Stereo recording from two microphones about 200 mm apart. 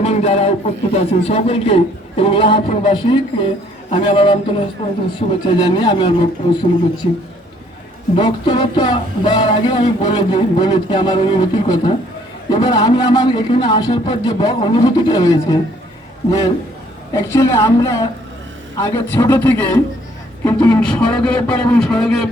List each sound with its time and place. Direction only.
0.0 s speech: 30° left (ahead or behind)
16.2 s a man's voice: 30° left (ahead or behind)
17.2 s a man's voice: 15° left (ahead or behind)